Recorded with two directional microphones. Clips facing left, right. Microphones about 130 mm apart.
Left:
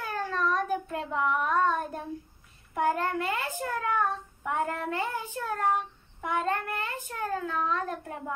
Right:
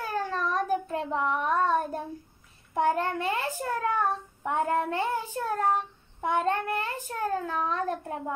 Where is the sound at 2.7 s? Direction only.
30° right (ahead or behind).